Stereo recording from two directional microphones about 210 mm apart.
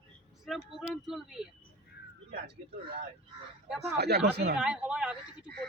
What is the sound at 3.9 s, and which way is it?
Speech, 50° right (ahead or behind).